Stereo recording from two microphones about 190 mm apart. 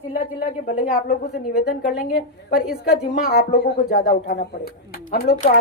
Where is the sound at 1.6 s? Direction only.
55° left (ahead or behind).